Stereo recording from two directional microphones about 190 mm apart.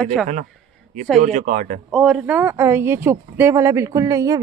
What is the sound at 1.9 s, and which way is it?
Speech, 5° right (ahead or behind).